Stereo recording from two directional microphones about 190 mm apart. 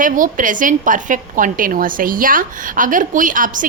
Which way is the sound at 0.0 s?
45° right (ahead or behind).